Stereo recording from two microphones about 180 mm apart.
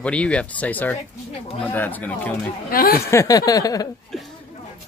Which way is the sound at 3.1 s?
20° left (ahead or behind).